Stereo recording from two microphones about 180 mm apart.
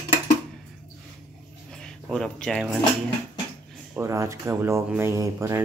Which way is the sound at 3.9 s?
15° right (ahead or behind).